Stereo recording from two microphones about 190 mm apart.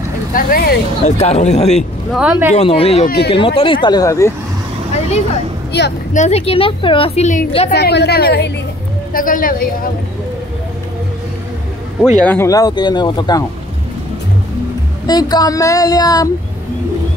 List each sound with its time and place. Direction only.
0.3 s speech: 50° left (ahead or behind)
1.2 s a woman's voice: 35° left (ahead or behind)
1.8 s speech: 5° right (ahead or behind)
2.5 s a woman's voice: 30° left (ahead or behind)
5.7 s speech: 60° left (ahead or behind)
6.1 s a woman's voice: 35° left (ahead or behind)
7.7 s a woman's voice: 60° left (ahead or behind); by 9.7 s 45° left (ahead or behind)
12.2 s speech: 10° left (ahead or behind)
15.0 s speech: 20° left (ahead or behind)